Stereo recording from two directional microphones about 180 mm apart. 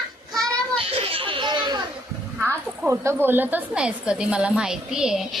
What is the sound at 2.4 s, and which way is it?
A woman's voice, 15° right (ahead or behind).